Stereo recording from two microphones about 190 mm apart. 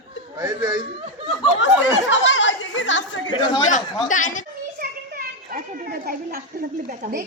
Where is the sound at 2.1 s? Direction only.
75° left (ahead or behind).